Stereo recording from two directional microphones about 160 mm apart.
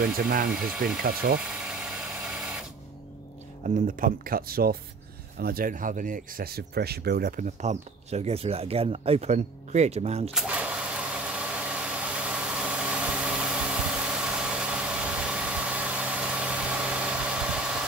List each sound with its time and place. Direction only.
0.5 s ratchet: 5° right (ahead or behind)
1.0 s speech: 80° right
1.7 s mechanisms: 5° right (ahead or behind)
3.6 s speech: 55° right (ahead or behind)
10.3 s vehicle: 5° right (ahead or behind)